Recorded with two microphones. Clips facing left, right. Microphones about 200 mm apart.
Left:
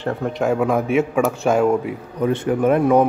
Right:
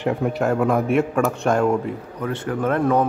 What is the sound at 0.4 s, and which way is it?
A man's voice, centre (ahead or behind).